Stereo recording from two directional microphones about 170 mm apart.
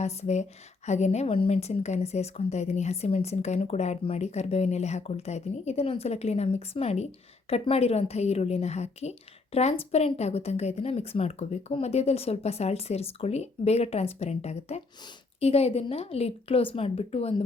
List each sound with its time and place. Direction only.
0.0 s a woman's voice: 40° left (ahead or behind)